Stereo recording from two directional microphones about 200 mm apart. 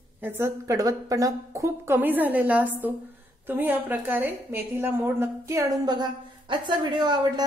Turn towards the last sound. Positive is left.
turn(degrees=-20)  # may be behind; listen again after turning